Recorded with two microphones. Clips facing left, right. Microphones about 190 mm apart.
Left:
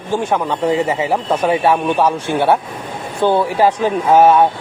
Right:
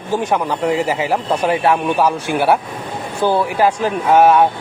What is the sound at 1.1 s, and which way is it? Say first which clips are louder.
Speech: left 1 dB; centre (ahead or behind).